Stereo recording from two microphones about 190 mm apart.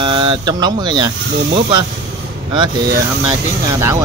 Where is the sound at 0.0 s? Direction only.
25° right (ahead or behind).